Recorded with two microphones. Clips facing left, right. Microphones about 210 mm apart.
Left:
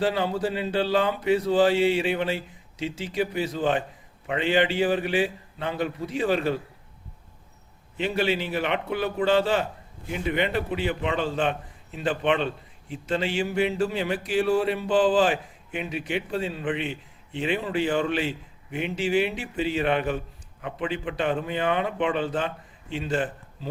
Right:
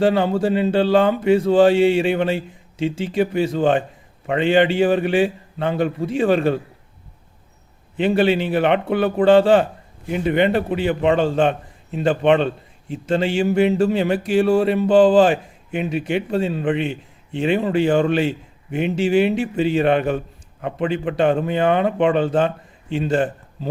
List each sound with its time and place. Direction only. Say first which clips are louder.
0.0 s a man's voice: right 7 dB; 50° right (ahead or behind)
1.5 s a man's voice: right 7 dB; 65° right (ahead or behind)
2.9 s speech: right 8 dB; 25° right (ahead or behind)
3.5 s a man's voice: right 7 dB; 50° right (ahead or behind)
7.9 s a man's voice: right 8 dB; 55° right (ahead or behind)